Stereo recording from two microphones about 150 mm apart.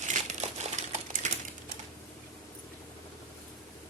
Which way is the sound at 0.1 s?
50° right (ahead or behind).